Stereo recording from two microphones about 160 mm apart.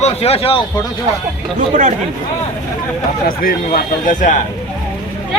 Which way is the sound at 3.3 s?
60° left (ahead or behind).